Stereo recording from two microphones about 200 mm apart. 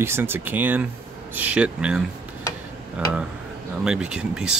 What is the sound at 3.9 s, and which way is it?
Speech, 5° right (ahead or behind).